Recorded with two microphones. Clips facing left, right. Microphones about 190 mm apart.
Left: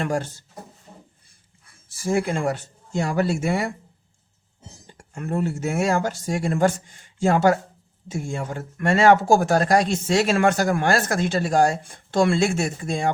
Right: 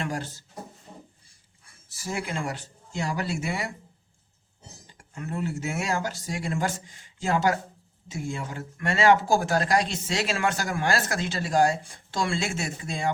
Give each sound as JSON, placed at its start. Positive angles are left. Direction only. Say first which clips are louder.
{"t": 2.0, "sound": "speech", "louder": "left 9 dB", "side_deg": 50}
{"t": 4.9, "sound": "speech", "louder": "left 7 dB", "side_deg": 50}